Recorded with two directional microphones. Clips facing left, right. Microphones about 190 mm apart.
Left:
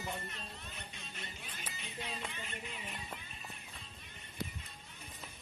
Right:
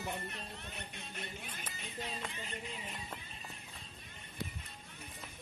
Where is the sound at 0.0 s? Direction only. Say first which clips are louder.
Right 1 dB; 60° right (ahead or behind).